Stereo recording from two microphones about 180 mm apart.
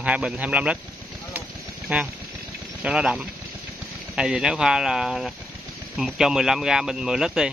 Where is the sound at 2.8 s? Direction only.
5° right (ahead or behind).